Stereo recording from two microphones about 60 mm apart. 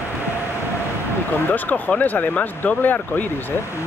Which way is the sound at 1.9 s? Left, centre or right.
Left.